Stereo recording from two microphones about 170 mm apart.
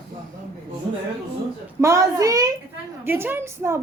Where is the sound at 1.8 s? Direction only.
15° right (ahead or behind).